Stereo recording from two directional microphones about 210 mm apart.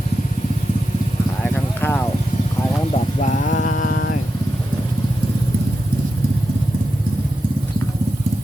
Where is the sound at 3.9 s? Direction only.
55° left (ahead or behind).